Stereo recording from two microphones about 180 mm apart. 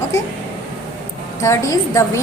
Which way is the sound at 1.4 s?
15° left (ahead or behind).